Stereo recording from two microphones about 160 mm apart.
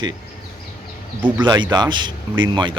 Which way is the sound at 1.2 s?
30° right (ahead or behind).